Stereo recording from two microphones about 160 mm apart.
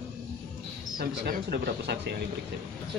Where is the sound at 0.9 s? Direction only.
75° right (ahead or behind).